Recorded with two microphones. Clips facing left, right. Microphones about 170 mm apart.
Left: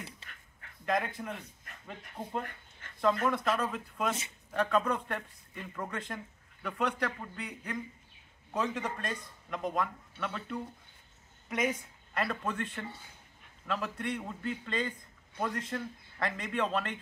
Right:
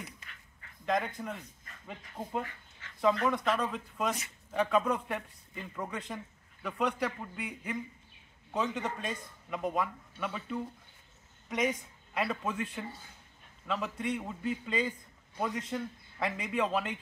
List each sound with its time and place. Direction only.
0.2 s a sound: 30° left (ahead or behind)
0.8 s speech: 5° left (ahead or behind)
11.4 s speech: 5° left (ahead or behind)